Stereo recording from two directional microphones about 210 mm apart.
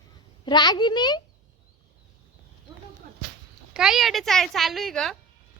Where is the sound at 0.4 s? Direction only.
20° left (ahead or behind).